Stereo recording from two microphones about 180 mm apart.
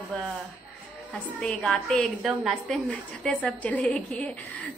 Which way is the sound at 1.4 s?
5° left (ahead or behind).